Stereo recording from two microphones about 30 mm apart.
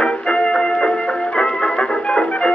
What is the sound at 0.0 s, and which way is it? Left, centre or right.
Music, left.